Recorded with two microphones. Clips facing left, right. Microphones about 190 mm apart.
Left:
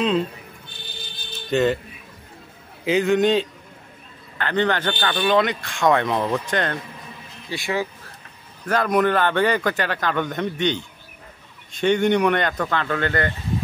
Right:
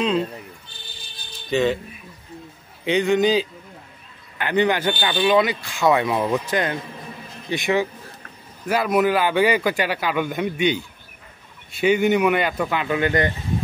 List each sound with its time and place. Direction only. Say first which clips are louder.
1.5 s a man's voice: left 1 dB; centre (ahead or behind)
2.8 s a man's voice: even; centre (ahead or behind)
4.4 s speech: right 2 dB; 10° right (ahead or behind)
7.4 s speech: right 4 dB; 20° right (ahead or behind)
8.6 s speech: even; 5° right (ahead or behind)